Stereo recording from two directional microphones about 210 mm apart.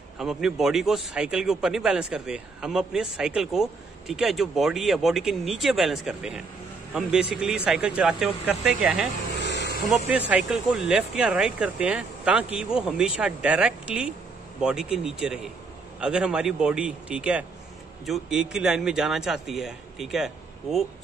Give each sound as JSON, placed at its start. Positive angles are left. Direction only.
{"t": 0.2, "sound": "speech", "side_deg": 0}
{"t": 9.4, "sound": "vehicle", "side_deg": 55}
{"t": 9.8, "sound": "speech", "side_deg": -5}